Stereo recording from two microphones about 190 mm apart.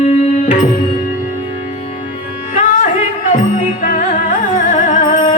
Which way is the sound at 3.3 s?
45° left (ahead or behind).